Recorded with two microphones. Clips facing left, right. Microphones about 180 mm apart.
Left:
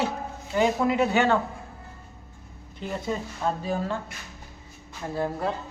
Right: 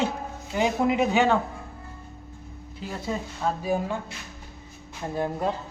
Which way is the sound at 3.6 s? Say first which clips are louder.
Right 2 dB; 10° right (ahead or behind).